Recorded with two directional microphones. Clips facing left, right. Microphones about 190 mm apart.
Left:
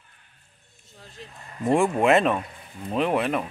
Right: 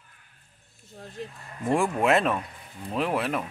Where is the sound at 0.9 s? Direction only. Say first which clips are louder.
Right 7 dB; 50° right (ahead or behind).